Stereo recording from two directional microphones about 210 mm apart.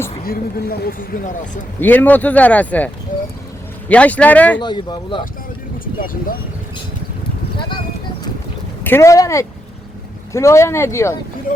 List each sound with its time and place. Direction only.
0.3 s speech: 45° left (ahead or behind)
1.8 s speech: 10° left (ahead or behind)
3.1 s a sound: 40° left (ahead or behind)
3.8 s speech: 5° left (ahead or behind)
4.6 s speech: 20° left (ahead or behind)
5.8 s speech: 40° left (ahead or behind)
8.8 s speech: 10° left (ahead or behind)
11.5 s speech: 40° left (ahead or behind)